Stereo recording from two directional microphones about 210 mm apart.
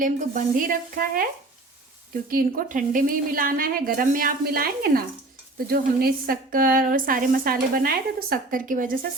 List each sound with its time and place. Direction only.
0.0 s speech: 40° right (ahead or behind)
2.3 s a woman's voice: 40° right (ahead or behind)